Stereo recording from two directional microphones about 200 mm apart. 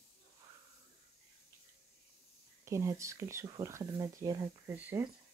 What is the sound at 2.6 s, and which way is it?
Speech, 15° right (ahead or behind).